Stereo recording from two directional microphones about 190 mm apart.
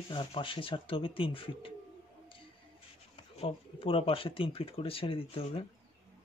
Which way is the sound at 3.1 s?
30° left (ahead or behind).